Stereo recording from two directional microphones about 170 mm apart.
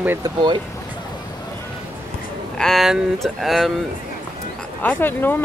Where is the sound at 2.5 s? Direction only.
Centre (ahead or behind).